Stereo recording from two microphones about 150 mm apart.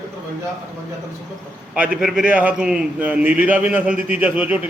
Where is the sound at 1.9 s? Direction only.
5° right (ahead or behind).